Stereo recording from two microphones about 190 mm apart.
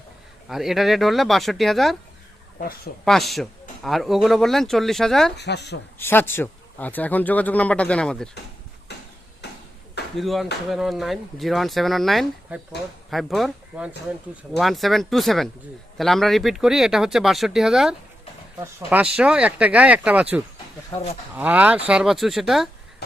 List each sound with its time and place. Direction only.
0.4 s speech: centre (ahead or behind)
2.6 s speech: 55° left (ahead or behind)
3.0 s speech: centre (ahead or behind)
5.4 s speech: 60° left (ahead or behind)
6.0 s a man's voice: 10° left (ahead or behind)
8.9 s a sound: 60° left (ahead or behind)
10.2 s speech: centre (ahead or behind)
20.9 s speech: 30° left (ahead or behind)
21.3 s speech: 10° right (ahead or behind)